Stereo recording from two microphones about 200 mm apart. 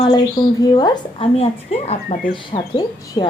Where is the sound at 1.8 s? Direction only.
40° left (ahead or behind).